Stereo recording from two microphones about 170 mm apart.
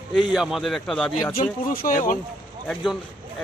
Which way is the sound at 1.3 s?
55° left (ahead or behind).